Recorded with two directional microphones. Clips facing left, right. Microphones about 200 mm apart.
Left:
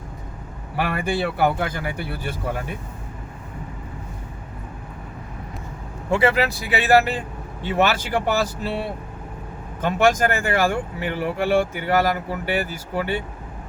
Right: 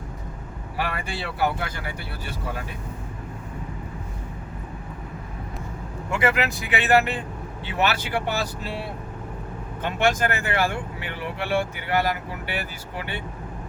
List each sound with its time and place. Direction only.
0.8 s speech: 50° left (ahead or behind)
6.1 s speech: 35° left (ahead or behind)
9.8 s speech: 45° left (ahead or behind)